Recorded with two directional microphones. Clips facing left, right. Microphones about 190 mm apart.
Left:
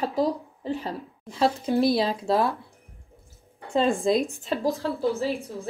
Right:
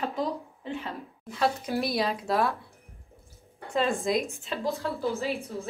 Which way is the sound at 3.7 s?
30° left (ahead or behind).